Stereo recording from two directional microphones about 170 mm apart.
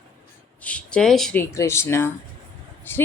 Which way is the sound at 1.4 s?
15° left (ahead or behind).